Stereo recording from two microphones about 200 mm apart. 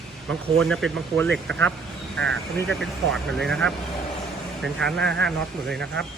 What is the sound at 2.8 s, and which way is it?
Speech, centre (ahead or behind).